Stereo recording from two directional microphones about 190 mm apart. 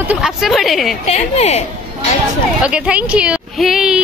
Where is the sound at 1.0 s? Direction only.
35° left (ahead or behind).